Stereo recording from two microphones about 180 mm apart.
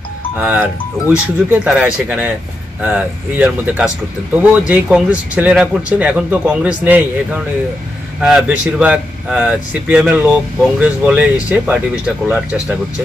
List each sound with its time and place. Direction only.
0.4 s speech: 10° right (ahead or behind)
8.2 s speech: 5° right (ahead or behind)